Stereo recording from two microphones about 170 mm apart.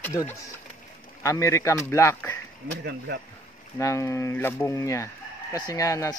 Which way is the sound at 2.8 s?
75° right (ahead or behind).